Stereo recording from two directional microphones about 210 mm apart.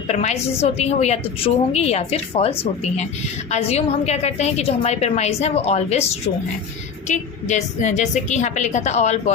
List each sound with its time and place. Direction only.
0.1 s a woman's voice: 30° left (ahead or behind)